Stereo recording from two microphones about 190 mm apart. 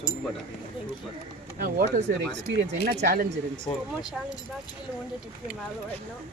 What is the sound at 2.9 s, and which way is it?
Speech, 55° right (ahead or behind).